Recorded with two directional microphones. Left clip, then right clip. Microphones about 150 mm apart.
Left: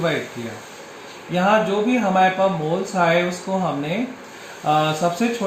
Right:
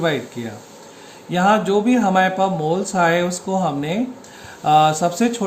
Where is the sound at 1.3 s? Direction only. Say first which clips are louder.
Right 2 dB; 45° right (ahead or behind).